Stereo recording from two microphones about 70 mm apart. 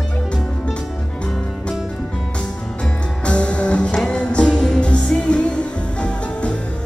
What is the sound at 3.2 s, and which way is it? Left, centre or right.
Music, centre.